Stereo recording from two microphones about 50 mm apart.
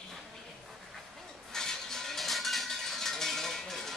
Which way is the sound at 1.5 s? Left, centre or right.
Centre.